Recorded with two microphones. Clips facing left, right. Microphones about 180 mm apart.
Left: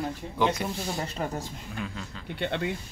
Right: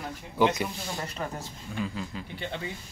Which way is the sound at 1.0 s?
30° left (ahead or behind).